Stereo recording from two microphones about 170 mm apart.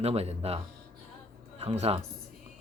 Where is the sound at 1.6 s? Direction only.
35° right (ahead or behind).